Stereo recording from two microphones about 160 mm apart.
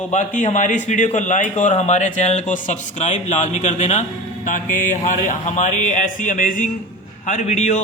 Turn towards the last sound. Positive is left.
turn(degrees=45)  # may be behind; listen again after turning